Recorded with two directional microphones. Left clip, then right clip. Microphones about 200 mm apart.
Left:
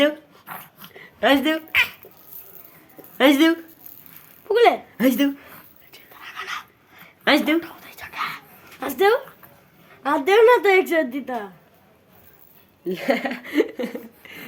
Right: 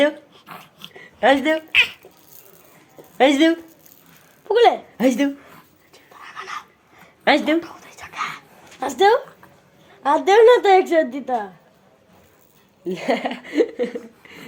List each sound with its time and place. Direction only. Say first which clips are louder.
0.4 s dog: even; 20° left (ahead or behind)
0.9 s a sound: right 2 dB; 5° right (ahead or behind)
3.2 s speech: right 1 dB; 5° left (ahead or behind)
4.9 s speech: right 1 dB; 10° left (ahead or behind)
5.9 s whispering: even; 5° left (ahead or behind)
7.3 s a sound: right 1 dB; centre (ahead or behind)
10.0 s a woman's voice: right 3 dB; 5° right (ahead or behind)
12.8 s speech: right 1 dB; 10° right (ahead or behind)